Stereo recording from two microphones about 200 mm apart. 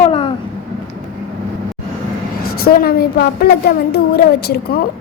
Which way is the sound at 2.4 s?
50° left (ahead or behind).